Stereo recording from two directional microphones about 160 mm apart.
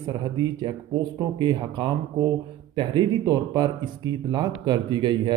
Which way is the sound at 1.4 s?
30° right (ahead or behind).